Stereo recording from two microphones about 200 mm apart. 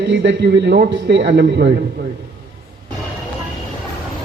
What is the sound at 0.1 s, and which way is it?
A man's voice, 60° right (ahead or behind).